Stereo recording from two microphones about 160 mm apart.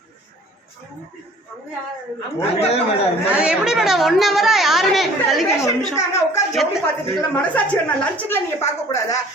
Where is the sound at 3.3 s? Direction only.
5° right (ahead or behind).